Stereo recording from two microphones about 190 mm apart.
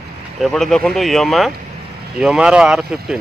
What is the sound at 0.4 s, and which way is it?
Speech, centre (ahead or behind).